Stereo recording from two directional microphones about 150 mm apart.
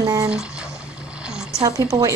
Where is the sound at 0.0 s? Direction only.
25° right (ahead or behind).